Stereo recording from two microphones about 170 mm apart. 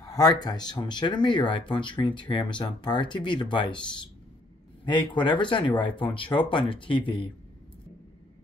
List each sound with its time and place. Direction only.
0.0 s speech: 20° left (ahead or behind)